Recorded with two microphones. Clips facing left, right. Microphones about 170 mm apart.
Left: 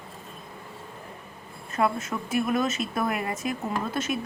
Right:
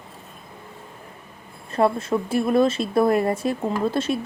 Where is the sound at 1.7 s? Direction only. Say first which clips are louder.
Right 6 dB; 30° right (ahead or behind).